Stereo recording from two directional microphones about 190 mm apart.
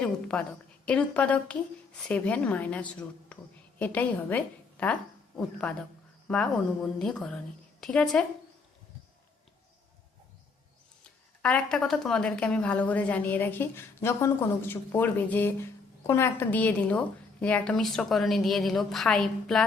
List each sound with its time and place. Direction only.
0.0 s a woman's voice: 5° left (ahead or behind)
6.2 s a woman's voice: 5° left (ahead or behind)
11.4 s a woman's voice: 5° left (ahead or behind)